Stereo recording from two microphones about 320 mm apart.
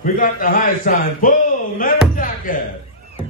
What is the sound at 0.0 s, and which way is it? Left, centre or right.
A man's voice, left.